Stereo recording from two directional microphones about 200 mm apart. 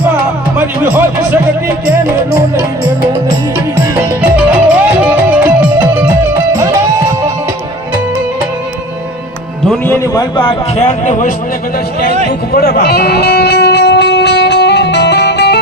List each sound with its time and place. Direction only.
0.5 s music: 10° right (ahead or behind)
4.2 s music: 5° right (ahead or behind)
9.6 s speech: 10° left (ahead or behind); by 11.3 s 35° left (ahead or behind)
12.5 s music: 50° left (ahead or behind)